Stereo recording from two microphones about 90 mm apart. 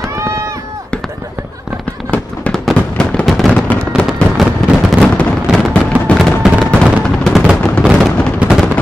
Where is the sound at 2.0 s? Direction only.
Centre (ahead or behind).